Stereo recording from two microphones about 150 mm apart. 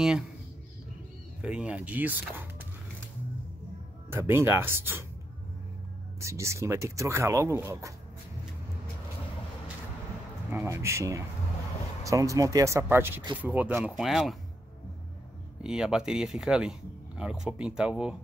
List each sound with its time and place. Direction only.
1.4 s speech: 5° right (ahead or behind)
4.1 s speech: 15° right (ahead or behind)
6.2 s speech: 20° right (ahead or behind)
10.5 s speech: 15° right (ahead or behind)
13.9 s speech: centre (ahead or behind)
15.6 s speech: 5° right (ahead or behind)